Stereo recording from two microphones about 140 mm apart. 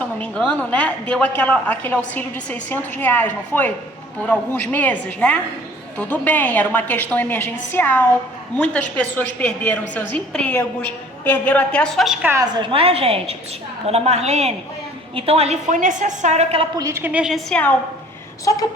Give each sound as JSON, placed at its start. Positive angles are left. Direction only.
{"t": 0.2, "sound": "a woman's voice", "side_deg": 10}
{"t": 12.3, "sound": "a woman's voice", "side_deg": -30}
{"t": 16.7, "sound": "a woman's voice", "side_deg": -25}
{"t": 17.0, "sound": "a woman's voice", "side_deg": -10}
{"t": 17.5, "sound": "a woman's voice", "side_deg": 10}